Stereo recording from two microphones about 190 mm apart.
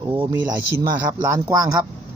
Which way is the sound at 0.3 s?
20° right (ahead or behind).